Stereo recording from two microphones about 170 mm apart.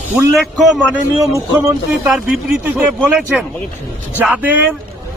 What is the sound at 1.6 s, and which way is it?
Speech, 15° right (ahead or behind).